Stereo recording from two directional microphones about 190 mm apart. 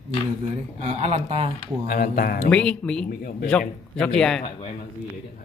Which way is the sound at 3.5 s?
5° left (ahead or behind).